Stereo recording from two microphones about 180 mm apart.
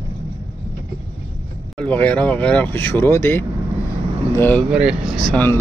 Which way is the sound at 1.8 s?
10° left (ahead or behind).